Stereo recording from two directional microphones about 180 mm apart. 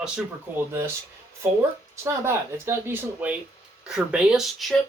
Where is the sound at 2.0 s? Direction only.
15° right (ahead or behind).